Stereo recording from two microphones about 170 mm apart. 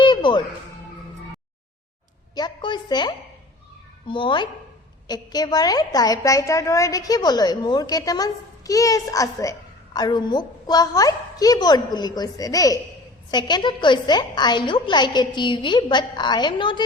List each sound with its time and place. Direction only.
0.0 s music: 30° left (ahead or behind)
2.3 s a woman's voice: 25° left (ahead or behind)